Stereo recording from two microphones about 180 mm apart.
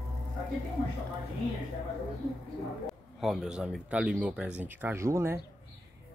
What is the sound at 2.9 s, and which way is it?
Speech, centre (ahead or behind).